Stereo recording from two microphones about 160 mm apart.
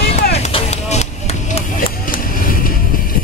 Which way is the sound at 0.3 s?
45° left (ahead or behind).